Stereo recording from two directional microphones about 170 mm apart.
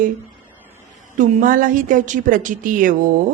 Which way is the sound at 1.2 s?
50° right (ahead or behind).